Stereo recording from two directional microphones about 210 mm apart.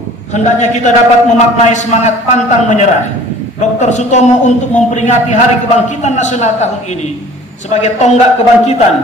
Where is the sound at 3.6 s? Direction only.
35° left (ahead or behind).